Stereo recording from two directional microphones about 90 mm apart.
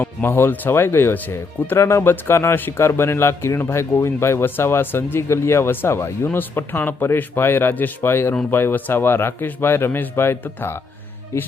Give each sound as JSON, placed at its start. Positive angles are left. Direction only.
{"t": 0.0, "sound": "speech", "side_deg": 25}